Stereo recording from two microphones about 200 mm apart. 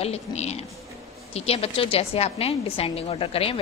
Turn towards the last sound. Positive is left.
turn(degrees=30)  # may be behind; listen again after turning